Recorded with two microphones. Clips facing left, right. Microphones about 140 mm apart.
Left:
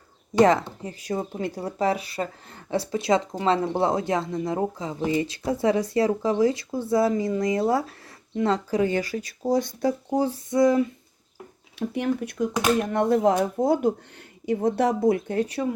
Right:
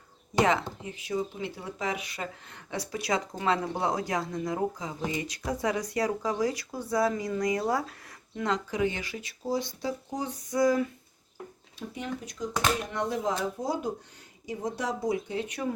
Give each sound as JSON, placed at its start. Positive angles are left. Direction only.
{"t": 0.4, "sound": "speech", "side_deg": 40}
{"t": 10.1, "sound": "speech", "side_deg": 30}
{"t": 11.8, "sound": "speech", "side_deg": 65}